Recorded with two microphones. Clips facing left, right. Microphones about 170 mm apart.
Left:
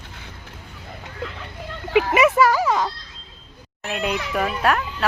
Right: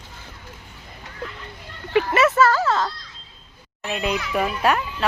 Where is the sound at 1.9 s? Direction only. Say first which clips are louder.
Left 1 dB; 75° left (ahead or behind).